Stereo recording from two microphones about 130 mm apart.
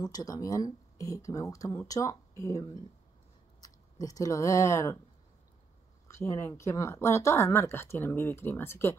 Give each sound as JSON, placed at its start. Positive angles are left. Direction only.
{"t": 0.0, "sound": "a woman's voice", "side_deg": 30}
{"t": 3.6, "sound": "speech", "side_deg": 25}
{"t": 6.0, "sound": "a woman's voice", "side_deg": 25}